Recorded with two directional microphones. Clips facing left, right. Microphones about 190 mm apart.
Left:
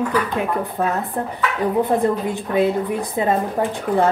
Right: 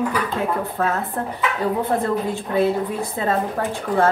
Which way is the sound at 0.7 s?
15° left (ahead or behind).